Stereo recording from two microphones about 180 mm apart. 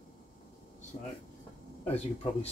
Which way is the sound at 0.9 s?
35° left (ahead or behind).